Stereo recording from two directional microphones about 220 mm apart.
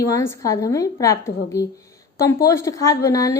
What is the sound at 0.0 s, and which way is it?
A woman's voice, 15° left (ahead or behind).